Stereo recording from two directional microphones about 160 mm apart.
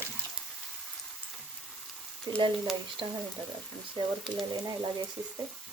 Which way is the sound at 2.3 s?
25° right (ahead or behind).